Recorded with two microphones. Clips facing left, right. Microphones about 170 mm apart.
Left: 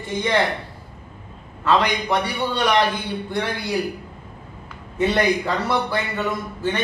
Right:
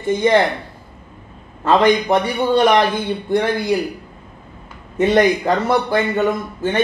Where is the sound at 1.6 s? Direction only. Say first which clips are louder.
Right 6 dB; 50° right (ahead or behind).